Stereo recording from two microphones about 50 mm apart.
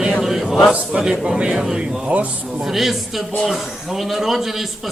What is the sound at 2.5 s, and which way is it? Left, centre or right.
A man's voice, centre.